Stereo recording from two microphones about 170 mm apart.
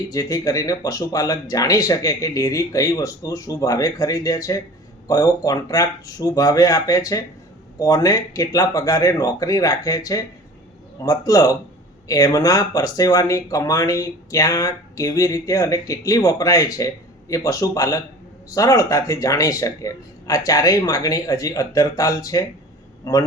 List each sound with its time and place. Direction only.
0.1 s speech: 20° left (ahead or behind)